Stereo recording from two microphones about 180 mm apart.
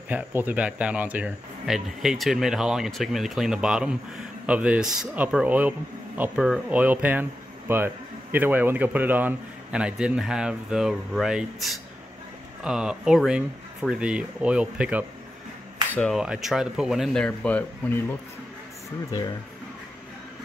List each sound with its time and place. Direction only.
0.1 s speech: 10° right (ahead or behind); by 18.0 s 10° left (ahead or behind)